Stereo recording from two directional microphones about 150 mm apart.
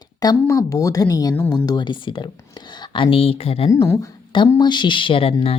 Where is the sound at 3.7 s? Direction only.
20° left (ahead or behind); by 5.5 s 40° left (ahead or behind).